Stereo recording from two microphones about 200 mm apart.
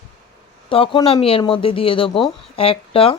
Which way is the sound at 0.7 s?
25° left (ahead or behind).